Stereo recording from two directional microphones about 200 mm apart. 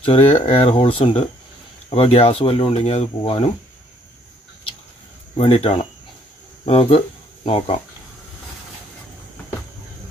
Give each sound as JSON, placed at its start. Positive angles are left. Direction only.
{"t": 0.0, "sound": "speech", "side_deg": 30}
{"t": 5.3, "sound": "speech", "side_deg": 30}